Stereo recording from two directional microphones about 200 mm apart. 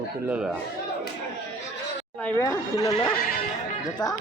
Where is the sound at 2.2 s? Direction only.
10° left (ahead or behind).